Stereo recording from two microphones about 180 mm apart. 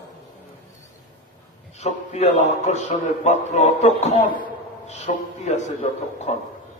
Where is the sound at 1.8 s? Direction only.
40° left (ahead or behind).